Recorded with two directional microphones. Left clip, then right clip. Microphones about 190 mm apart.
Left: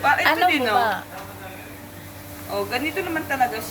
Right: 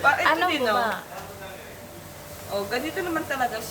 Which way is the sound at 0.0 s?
20° left (ahead or behind).